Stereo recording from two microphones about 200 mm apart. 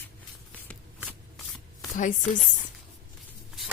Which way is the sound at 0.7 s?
5° left (ahead or behind).